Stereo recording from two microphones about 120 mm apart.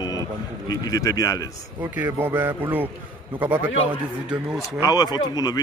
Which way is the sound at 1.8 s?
20° right (ahead or behind).